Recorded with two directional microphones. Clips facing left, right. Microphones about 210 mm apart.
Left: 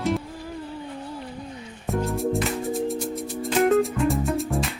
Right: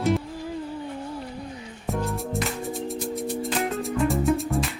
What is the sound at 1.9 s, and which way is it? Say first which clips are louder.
Music: left 4 dB; centre (ahead or behind).